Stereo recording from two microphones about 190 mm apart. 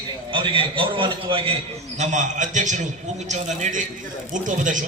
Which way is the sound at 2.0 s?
40° right (ahead or behind).